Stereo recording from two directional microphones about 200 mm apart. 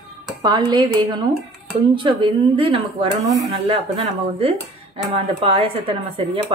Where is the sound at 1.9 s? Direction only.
25° right (ahead or behind).